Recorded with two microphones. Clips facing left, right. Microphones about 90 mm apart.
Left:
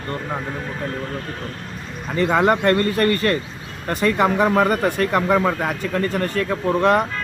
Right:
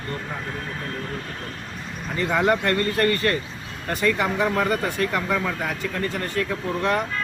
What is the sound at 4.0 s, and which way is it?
Speech, 50° left (ahead or behind).